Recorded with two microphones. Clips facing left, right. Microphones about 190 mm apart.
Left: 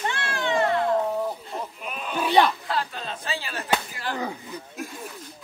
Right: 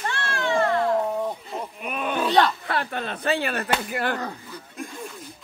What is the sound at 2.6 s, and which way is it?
Speech, 65° right (ahead or behind).